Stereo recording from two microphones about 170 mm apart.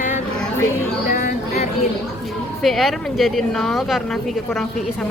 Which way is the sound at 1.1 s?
55° left (ahead or behind).